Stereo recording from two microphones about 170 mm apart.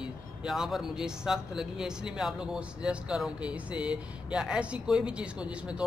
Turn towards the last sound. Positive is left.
turn(degrees=-5)  # may be behind; listen again after turning